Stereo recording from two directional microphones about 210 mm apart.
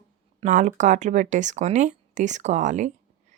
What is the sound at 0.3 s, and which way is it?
Speech, 35° right (ahead or behind).